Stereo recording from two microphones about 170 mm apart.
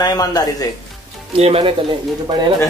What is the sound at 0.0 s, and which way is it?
Speech, 20° left (ahead or behind).